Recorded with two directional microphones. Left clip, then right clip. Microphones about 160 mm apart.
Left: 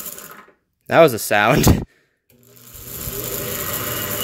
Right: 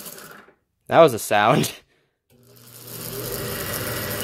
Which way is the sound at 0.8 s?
20° left (ahead or behind).